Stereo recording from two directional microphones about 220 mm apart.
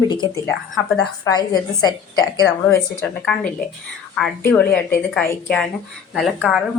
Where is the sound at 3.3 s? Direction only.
5° left (ahead or behind).